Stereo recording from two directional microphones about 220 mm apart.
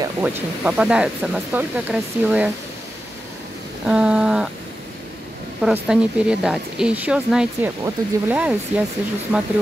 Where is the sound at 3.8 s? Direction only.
5° right (ahead or behind).